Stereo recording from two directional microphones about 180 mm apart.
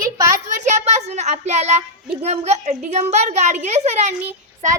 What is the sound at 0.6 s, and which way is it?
Speech, 40° right (ahead or behind).